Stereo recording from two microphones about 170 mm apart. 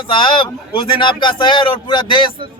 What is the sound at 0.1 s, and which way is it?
Speech, 30° left (ahead or behind).